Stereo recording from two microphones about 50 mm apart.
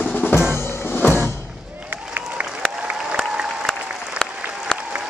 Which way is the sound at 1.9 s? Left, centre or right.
Right.